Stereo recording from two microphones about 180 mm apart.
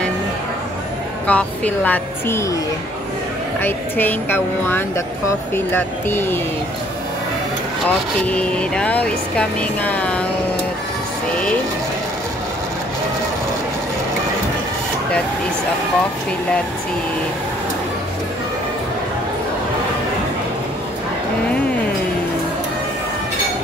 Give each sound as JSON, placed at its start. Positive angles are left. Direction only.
{"t": 1.2, "sound": "speech", "side_deg": 10}
{"t": 3.6, "sound": "speech", "side_deg": 10}
{"t": 7.8, "sound": "speech", "side_deg": 5}